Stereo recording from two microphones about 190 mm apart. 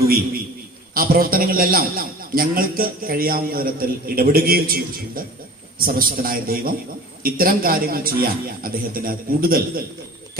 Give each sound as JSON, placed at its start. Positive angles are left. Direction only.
{"t": 0.9, "sound": "a man's voice", "side_deg": -50}